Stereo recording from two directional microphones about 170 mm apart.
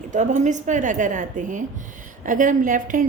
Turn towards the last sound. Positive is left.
turn(degrees=-50)  # may be behind; listen again after turning